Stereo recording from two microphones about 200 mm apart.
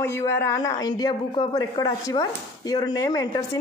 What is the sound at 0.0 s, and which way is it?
A woman's voice, 10° left (ahead or behind).